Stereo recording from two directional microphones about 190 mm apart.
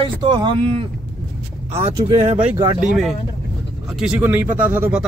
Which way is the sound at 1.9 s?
30° right (ahead or behind).